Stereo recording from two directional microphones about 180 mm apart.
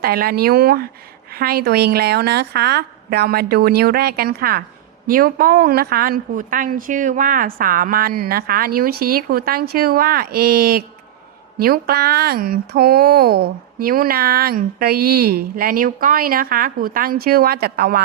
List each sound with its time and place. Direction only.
0.0 s speech: 55° right (ahead or behind)